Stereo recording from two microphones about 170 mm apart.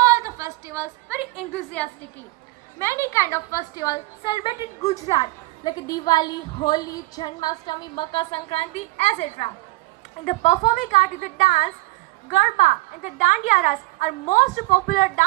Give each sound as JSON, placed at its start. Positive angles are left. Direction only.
{"t": 0.0, "sound": "a sound", "side_deg": -20}
{"t": 1.5, "sound": "a woman's voice", "side_deg": 10}
{"t": 5.1, "sound": "a woman's voice", "side_deg": 25}